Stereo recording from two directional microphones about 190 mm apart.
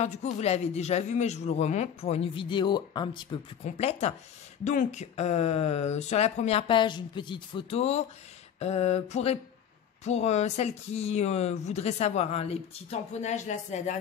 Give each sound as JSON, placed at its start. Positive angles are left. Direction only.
{"t": 0.0, "sound": "speech", "side_deg": 35}